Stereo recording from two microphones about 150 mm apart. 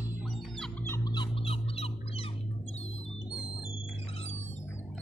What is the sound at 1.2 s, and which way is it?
Fowl, 40° left (ahead or behind).